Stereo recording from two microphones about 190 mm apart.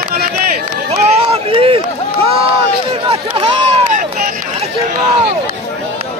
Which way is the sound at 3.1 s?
30° right (ahead or behind).